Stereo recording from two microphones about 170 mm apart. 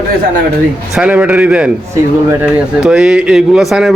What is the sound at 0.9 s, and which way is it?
A man's voice, 5° right (ahead or behind).